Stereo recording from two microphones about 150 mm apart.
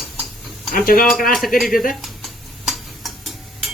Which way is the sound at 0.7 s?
75° left (ahead or behind).